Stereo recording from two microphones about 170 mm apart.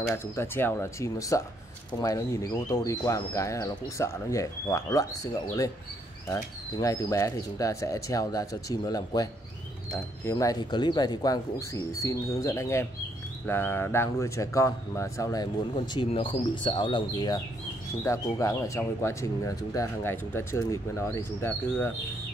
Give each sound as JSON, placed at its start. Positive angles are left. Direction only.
{"t": 0.1, "sound": "speech", "side_deg": 15}